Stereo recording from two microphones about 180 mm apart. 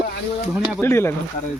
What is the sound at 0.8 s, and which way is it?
Speech, 15° left (ahead or behind).